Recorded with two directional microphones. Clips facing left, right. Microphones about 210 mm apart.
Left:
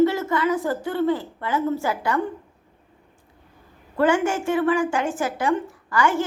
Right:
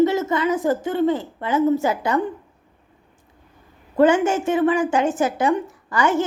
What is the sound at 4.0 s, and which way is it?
A woman's voice, 20° right (ahead or behind).